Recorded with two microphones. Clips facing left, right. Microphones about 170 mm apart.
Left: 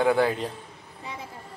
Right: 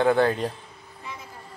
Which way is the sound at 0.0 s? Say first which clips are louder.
Right 2 dB; 10° left (ahead or behind).